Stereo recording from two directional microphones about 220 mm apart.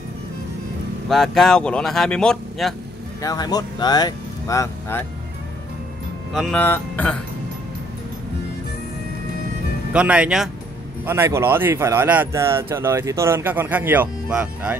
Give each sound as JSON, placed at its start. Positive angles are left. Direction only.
{"t": 1.0, "sound": "speech", "side_deg": 0}
{"t": 3.2, "sound": "speech", "side_deg": 15}
{"t": 6.3, "sound": "speech", "side_deg": 5}
{"t": 9.9, "sound": "speech", "side_deg": -5}